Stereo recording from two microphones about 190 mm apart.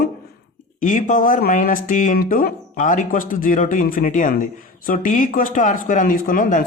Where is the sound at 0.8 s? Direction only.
45° left (ahead or behind).